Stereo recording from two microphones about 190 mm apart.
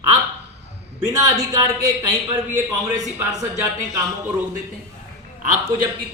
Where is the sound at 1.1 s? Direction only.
15° right (ahead or behind).